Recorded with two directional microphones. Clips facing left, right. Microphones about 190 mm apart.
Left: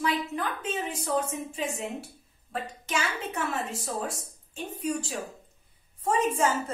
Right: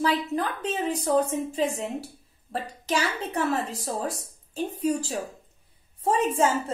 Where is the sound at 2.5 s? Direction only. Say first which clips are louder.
Right 4 dB; 35° right (ahead or behind).